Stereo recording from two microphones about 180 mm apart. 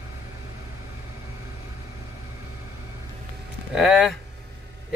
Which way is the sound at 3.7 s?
5° right (ahead or behind).